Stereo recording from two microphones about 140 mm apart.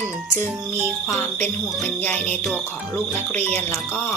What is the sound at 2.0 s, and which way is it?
Speech, 10° left (ahead or behind).